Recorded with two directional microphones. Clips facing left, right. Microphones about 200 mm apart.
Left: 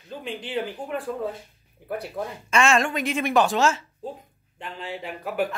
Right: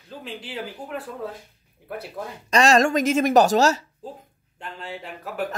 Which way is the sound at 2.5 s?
40° right (ahead or behind).